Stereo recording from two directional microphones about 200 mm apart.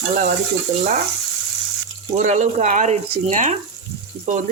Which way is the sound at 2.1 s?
35° right (ahead or behind).